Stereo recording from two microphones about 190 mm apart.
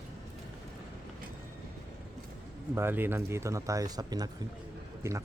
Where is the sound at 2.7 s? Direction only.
10° right (ahead or behind).